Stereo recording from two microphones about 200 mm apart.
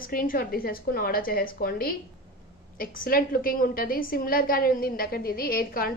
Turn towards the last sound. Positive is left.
turn(degrees=45)  # may be behind; listen again after turning